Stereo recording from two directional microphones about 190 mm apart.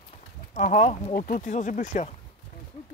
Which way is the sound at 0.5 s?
40° left (ahead or behind).